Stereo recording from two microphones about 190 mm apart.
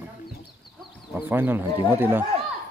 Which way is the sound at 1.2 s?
10° right (ahead or behind).